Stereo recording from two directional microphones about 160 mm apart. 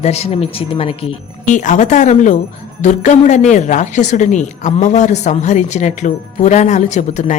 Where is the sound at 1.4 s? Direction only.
50° left (ahead or behind).